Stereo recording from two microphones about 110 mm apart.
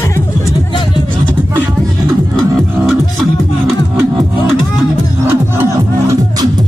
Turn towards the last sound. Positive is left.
turn(degrees=-30)  # may be behind; listen again after turning